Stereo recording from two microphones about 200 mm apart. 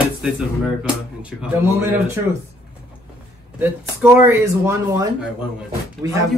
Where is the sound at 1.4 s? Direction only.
10° right (ahead or behind).